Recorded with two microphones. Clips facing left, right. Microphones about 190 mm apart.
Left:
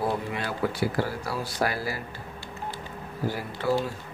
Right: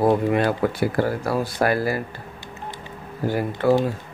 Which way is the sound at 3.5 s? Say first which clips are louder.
Right 7 dB; 50° right (ahead or behind).